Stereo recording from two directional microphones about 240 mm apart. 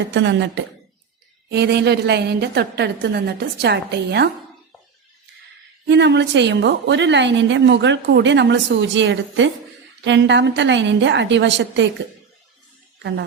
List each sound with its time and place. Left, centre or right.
0.0 s a woman's voice: right
5.9 s a woman's voice: right
13.0 s speech: right